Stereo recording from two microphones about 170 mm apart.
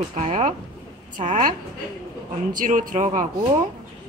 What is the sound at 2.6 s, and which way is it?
Speech, 50° right (ahead or behind).